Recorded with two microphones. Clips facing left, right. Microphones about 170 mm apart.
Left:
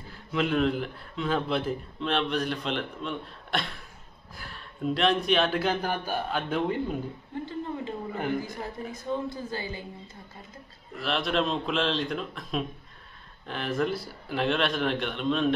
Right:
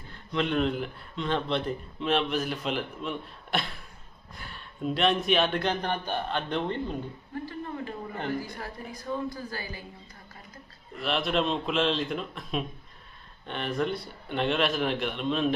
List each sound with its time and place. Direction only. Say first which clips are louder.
0.1 s speech: left 1 dB; 5° left (ahead or behind)
7.4 s a sound: left 3 dB; 20° left (ahead or behind)
8.5 s a woman's voice: left 3 dB; 20° left (ahead or behind)
11.0 s speech: even; centre (ahead or behind)